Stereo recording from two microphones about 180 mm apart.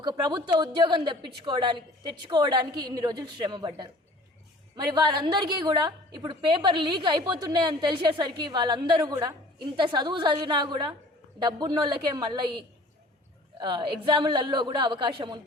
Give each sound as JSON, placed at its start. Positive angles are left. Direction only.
{"t": 0.0, "sound": "a woman's voice", "side_deg": -25}
{"t": 13.6, "sound": "a woman's voice", "side_deg": -25}